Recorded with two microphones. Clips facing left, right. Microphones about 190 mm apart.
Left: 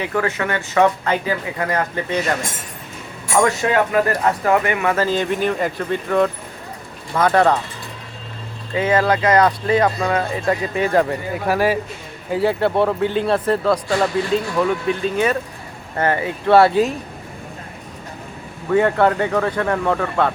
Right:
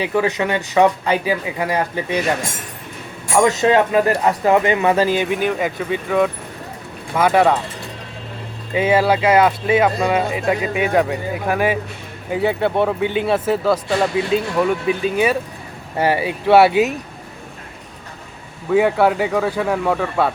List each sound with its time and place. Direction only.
0.0 s speech: 15° right (ahead or behind)
3.3 s speech: 20° right (ahead or behind)
8.7 s speech: 10° right (ahead or behind)
18.7 s speech: 5° right (ahead or behind)